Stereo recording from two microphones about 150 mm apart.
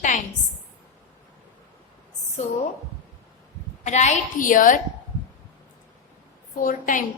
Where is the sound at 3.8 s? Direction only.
50° left (ahead or behind).